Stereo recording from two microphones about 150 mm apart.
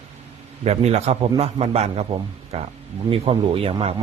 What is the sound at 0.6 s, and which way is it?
A man's voice, 45° right (ahead or behind).